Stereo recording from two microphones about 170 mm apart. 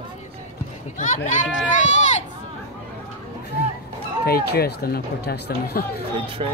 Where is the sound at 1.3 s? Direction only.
45° left (ahead or behind).